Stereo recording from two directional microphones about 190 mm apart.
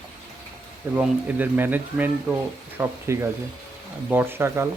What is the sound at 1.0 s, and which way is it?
Speech, 10° right (ahead or behind).